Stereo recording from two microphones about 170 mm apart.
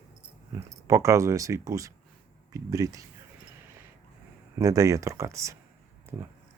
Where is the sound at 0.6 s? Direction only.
20° right (ahead or behind).